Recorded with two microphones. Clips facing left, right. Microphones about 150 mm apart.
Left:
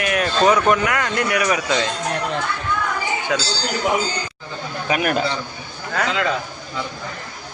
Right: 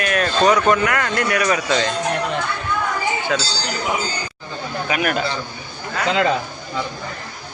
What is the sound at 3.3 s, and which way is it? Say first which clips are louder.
Speech: left 1 dB; 15° left (ahead or behind).